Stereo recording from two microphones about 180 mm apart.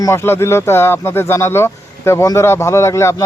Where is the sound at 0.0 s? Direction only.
15° left (ahead or behind).